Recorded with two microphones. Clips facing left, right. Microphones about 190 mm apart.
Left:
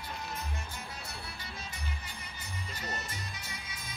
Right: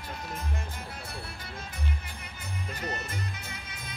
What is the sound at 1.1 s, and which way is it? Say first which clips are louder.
Music: right 4 dB; 55° right (ahead or behind).